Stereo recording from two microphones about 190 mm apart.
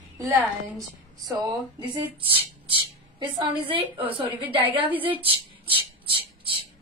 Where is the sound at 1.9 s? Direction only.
25° right (ahead or behind).